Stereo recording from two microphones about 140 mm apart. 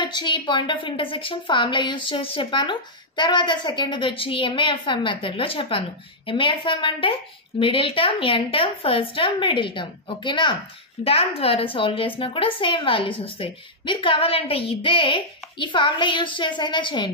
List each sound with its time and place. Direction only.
0.0 s a woman's voice: 35° left (ahead or behind)